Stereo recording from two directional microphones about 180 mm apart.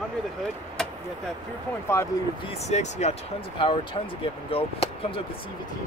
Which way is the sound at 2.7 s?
40° left (ahead or behind).